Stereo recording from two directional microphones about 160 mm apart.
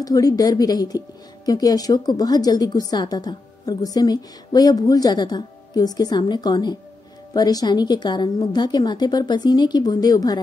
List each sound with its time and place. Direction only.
0.0 s speech: 20° left (ahead or behind)